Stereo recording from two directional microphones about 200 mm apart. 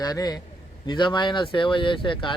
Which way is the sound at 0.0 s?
20° left (ahead or behind).